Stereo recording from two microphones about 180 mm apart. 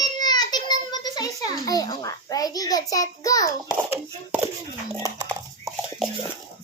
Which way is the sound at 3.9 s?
15° right (ahead or behind).